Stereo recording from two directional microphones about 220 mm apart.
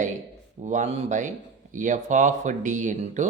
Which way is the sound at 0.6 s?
35° right (ahead or behind).